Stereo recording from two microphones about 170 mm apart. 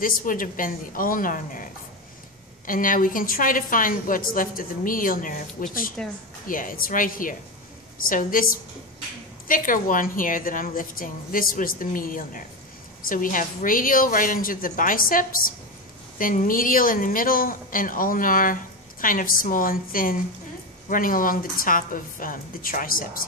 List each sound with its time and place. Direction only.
0.0 s a woman's voice: 55° left (ahead or behind)